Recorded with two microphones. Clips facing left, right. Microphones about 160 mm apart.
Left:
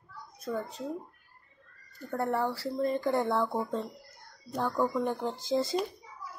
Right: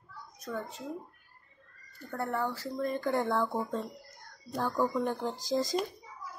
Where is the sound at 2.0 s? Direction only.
35° left (ahead or behind).